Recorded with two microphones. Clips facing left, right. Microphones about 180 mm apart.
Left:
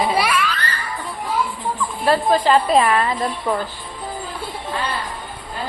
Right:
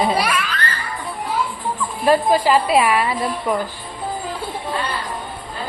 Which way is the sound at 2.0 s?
10° right (ahead or behind).